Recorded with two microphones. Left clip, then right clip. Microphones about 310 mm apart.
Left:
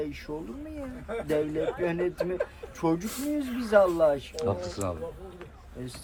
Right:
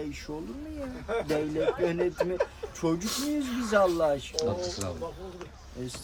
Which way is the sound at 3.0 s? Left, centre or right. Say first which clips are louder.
Right 1 dB; centre.